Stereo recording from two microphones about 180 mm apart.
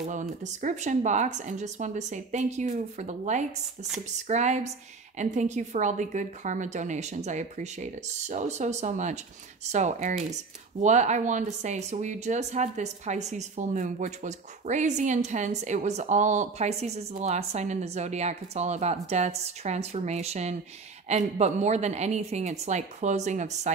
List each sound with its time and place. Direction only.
0.0 s speech: 40° right (ahead or behind)